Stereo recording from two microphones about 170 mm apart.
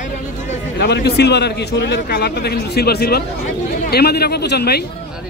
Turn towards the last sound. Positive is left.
turn(degrees=70)  # may be behind; listen again after turning